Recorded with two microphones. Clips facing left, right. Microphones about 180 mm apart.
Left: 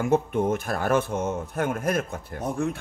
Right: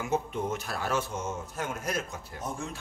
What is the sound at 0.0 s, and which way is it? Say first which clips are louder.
Speech: left 8 dB; 55° left (ahead or behind).